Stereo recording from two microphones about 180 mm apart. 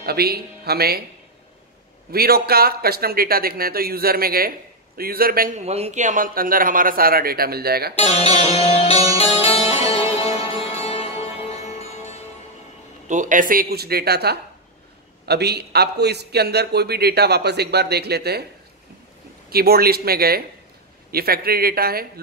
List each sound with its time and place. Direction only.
0.0 s speech: 60° right (ahead or behind)
2.1 s speech: 60° right (ahead or behind)
5.6 s a man's voice: 35° right (ahead or behind); by 7.9 s 60° right (ahead or behind)
7.9 s music: 35° left (ahead or behind)
13.1 s speech: 45° right (ahead or behind); by 18.4 s 60° right (ahead or behind)
19.5 s speech: 60° right (ahead or behind)